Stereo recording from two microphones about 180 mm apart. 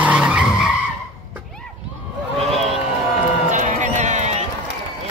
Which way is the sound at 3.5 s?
40° right (ahead or behind).